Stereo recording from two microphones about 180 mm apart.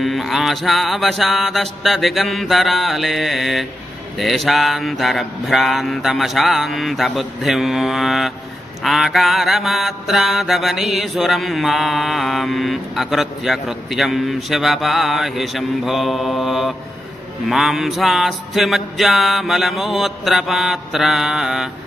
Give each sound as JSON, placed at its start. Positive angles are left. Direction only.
{"t": 0.0, "sound": "mantra", "side_deg": 0}